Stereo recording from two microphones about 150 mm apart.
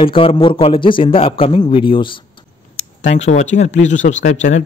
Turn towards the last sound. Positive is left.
turn(degrees=55)  # may be behind; listen again after turning